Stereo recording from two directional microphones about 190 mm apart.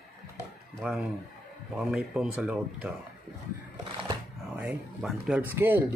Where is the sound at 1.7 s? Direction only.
Centre (ahead or behind).